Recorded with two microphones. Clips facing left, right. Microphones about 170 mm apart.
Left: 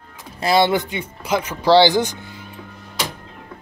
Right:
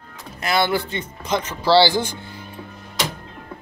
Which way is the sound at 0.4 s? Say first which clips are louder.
Left 4 dB; 25° left (ahead or behind).